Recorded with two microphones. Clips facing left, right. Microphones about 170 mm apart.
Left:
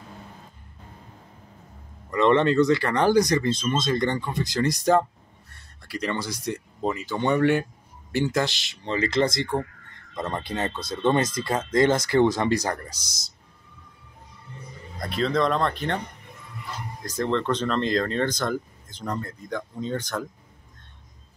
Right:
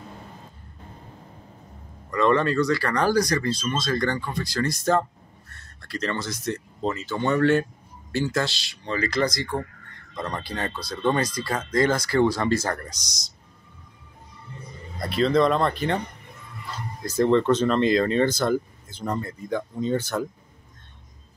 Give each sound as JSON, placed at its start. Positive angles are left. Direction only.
{"t": 2.0, "sound": "speech", "side_deg": 25}
{"t": 15.0, "sound": "speech", "side_deg": 0}
{"t": 17.0, "sound": "speech", "side_deg": -10}